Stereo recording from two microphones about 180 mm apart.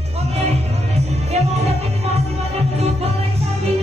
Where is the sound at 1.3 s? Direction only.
35° right (ahead or behind).